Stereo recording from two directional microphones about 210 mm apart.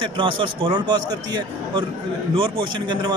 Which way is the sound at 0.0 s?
25° right (ahead or behind).